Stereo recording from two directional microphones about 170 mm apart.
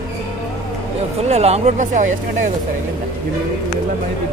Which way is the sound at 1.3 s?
40° right (ahead or behind).